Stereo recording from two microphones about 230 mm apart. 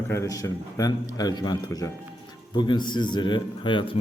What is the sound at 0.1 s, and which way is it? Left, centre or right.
A man's voice, centre.